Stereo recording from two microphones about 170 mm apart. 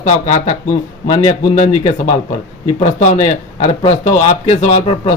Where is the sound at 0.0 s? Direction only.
45° left (ahead or behind).